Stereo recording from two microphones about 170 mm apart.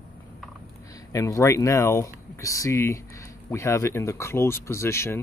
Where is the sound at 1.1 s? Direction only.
20° left (ahead or behind).